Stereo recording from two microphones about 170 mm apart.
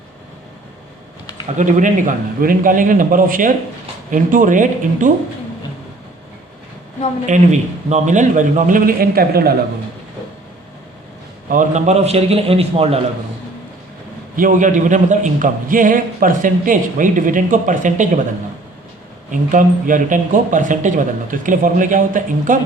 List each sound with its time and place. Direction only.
1.5 s a man's voice: 50° right (ahead or behind)
7.3 s a man's voice: 45° right (ahead or behind); by 9.6 s 65° right (ahead or behind)
11.4 s a man's voice: 50° right (ahead or behind); by 13.0 s 35° right (ahead or behind)
14.3 s a man's voice: 50° right (ahead or behind)
19.3 s a man's voice: 50° right (ahead or behind)